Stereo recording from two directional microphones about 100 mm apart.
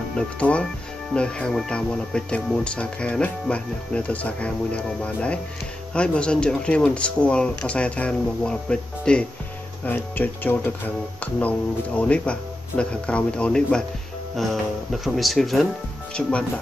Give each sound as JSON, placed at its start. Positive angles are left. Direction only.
{"t": 0.4, "sound": "speech", "side_deg": 10}
{"t": 16.2, "sound": "speech", "side_deg": 10}